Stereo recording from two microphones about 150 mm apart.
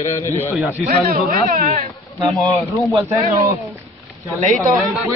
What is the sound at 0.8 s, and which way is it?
A man's voice, 65° right (ahead or behind).